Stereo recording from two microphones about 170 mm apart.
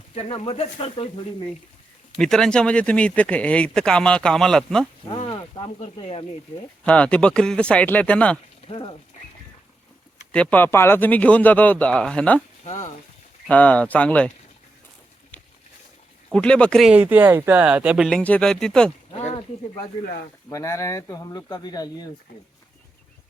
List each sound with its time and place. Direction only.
0.2 s speech: 35° left (ahead or behind)
2.1 s speech: 5° left (ahead or behind)
5.0 s speech: 30° left (ahead or behind)
6.8 s speech: 5° left (ahead or behind)
8.6 s speech: 30° left (ahead or behind)
10.3 s speech: 10° left (ahead or behind)
12.6 s speech: 45° left (ahead or behind)
13.5 s speech: 10° left (ahead or behind)
16.3 s speech: 5° left (ahead or behind)
18.2 s speech: 10° left (ahead or behind)
19.1 s a sound: 35° left (ahead or behind)
20.5 s speech: 20° left (ahead or behind)